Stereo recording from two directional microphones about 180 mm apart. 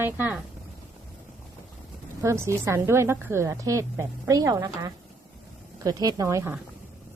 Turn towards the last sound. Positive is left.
turn(degrees=-15)  # may be behind; listen again after turning